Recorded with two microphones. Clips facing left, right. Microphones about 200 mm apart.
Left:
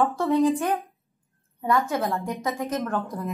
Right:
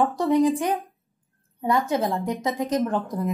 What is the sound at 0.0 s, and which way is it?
Speech, 15° right (ahead or behind).